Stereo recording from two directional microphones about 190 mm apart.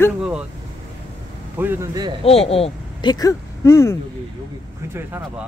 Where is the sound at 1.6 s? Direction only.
10° right (ahead or behind).